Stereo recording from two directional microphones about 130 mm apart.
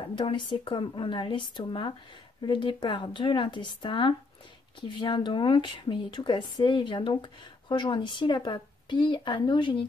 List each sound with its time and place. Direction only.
0.1 s speech: 40° left (ahead or behind)